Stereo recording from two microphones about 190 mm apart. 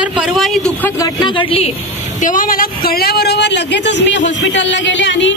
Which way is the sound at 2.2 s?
45° left (ahead or behind).